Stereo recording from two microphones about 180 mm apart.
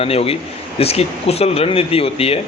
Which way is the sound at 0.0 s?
30° left (ahead or behind).